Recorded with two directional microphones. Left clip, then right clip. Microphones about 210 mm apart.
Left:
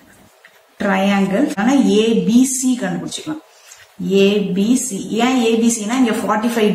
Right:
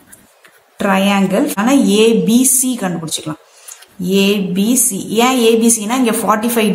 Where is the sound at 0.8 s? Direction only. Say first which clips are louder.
Right 3 dB; 45° right (ahead or behind).